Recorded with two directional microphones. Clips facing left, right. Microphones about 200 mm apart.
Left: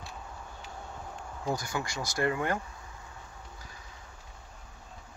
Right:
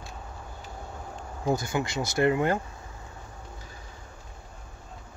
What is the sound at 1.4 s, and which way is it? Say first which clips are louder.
Speech: right 6 dB; 25° right (ahead or behind).